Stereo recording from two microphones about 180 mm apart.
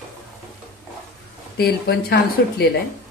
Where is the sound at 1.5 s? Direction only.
65° left (ahead or behind).